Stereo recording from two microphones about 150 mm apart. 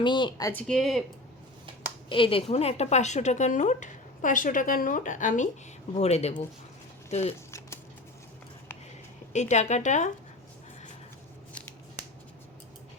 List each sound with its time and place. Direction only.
0.0 s speech: 30° left (ahead or behind)
0.5 s speech: centre (ahead or behind)
2.0 s a woman's voice: 35° left (ahead or behind); by 5.5 s 60° left (ahead or behind)
6.0 s a woman's voice: 45° left (ahead or behind)
9.3 s a woman's voice: 50° left (ahead or behind)